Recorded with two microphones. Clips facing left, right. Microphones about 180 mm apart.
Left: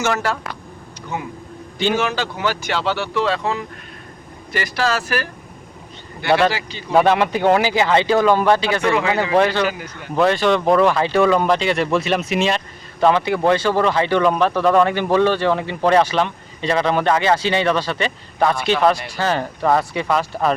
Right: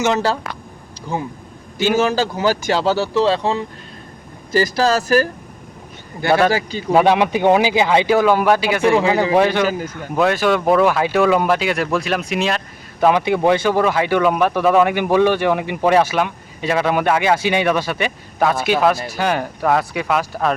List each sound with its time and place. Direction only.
1.1 s speech: 30° right (ahead or behind)
6.5 s speech: 45° right (ahead or behind)
6.9 s speech: 15° right (ahead or behind)
9.9 s speech: 5° right (ahead or behind)